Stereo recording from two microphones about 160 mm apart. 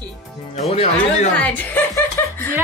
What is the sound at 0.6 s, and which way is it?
Speech, 40° left (ahead or behind).